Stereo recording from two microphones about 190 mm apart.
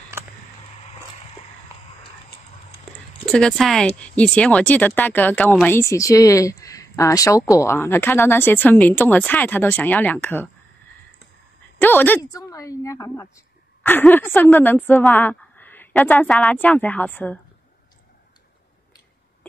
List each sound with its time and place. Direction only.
3.3 s speech: 5° left (ahead or behind)
11.8 s speech: 10° left (ahead or behind)